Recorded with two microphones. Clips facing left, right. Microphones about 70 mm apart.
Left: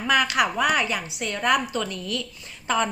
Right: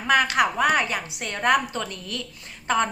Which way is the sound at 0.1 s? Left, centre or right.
Right.